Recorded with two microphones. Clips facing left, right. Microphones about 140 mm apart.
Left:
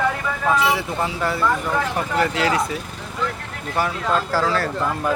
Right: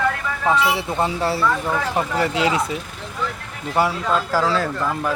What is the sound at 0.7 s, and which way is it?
Speech, 25° right (ahead or behind).